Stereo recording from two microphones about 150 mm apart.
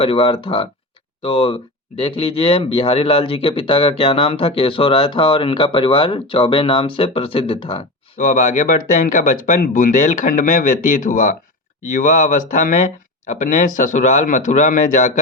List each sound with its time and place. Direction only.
0.0 s speech: 35° left (ahead or behind)
8.2 s speech: 60° left (ahead or behind)